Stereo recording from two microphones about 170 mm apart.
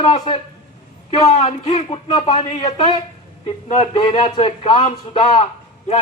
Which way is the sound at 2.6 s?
25° left (ahead or behind).